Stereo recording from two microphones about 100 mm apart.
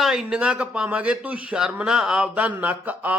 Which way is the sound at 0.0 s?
5° right (ahead or behind).